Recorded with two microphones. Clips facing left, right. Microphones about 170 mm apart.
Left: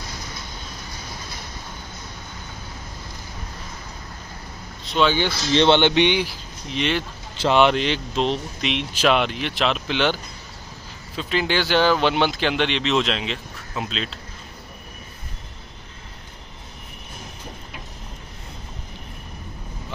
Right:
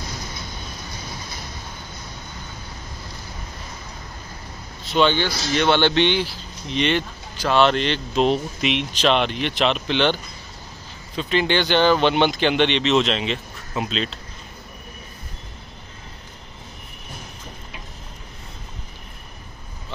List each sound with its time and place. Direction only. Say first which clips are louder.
4.8 s speech: right 2 dB; centre (ahead or behind)
5.5 s speech: left 2 dB; 25° left (ahead or behind)
6.7 s speech: right 2 dB; centre (ahead or behind)
7.3 s speech: left 1 dB; 20° left (ahead or behind)
8.2 s speech: right 5 dB; 5° right (ahead or behind)